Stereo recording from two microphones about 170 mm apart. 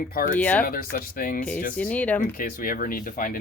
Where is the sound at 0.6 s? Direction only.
55° left (ahead or behind).